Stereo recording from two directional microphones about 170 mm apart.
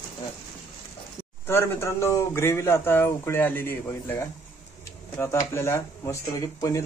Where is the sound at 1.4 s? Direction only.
15° left (ahead or behind).